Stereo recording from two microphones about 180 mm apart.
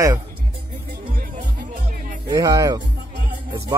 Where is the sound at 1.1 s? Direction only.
50° right (ahead or behind).